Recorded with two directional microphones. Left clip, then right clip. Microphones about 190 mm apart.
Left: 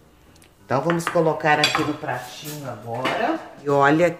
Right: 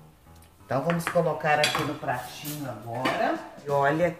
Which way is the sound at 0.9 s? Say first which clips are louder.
Left 5 dB; 50° left (ahead or behind).